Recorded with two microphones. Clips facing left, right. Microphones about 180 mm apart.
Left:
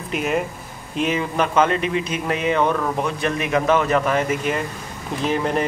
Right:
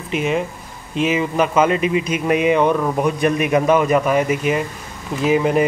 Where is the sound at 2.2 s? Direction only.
15° right (ahead or behind).